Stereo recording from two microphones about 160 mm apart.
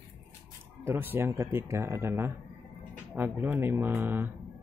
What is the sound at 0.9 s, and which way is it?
Speech, 15° right (ahead or behind).